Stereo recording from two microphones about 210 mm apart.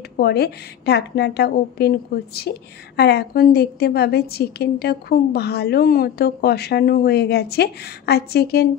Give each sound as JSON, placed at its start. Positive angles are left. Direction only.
{"t": 0.2, "sound": "a woman's voice", "side_deg": 50}